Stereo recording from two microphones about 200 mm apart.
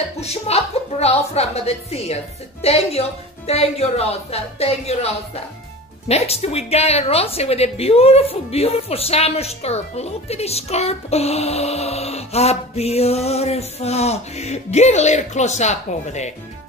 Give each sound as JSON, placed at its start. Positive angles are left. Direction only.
{"t": 0.2, "sound": "a woman's voice", "side_deg": 30}